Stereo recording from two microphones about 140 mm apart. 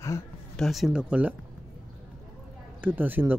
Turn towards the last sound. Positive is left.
turn(degrees=-15)  # may be behind; listen again after turning